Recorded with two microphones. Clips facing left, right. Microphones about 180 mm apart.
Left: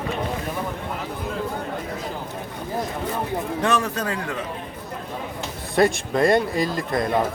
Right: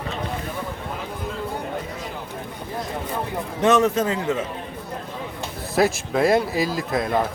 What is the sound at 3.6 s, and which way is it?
Speech, 20° right (ahead or behind).